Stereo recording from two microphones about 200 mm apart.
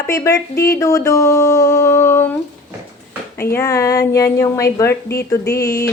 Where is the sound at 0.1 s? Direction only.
15° left (ahead or behind).